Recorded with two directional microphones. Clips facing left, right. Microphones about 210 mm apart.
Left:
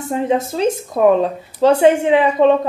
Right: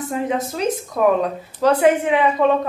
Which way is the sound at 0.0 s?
25° left (ahead or behind).